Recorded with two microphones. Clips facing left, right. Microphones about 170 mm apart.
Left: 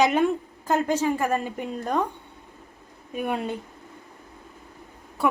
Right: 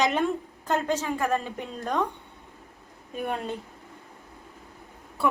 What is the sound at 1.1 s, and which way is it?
Speech, 15° left (ahead or behind).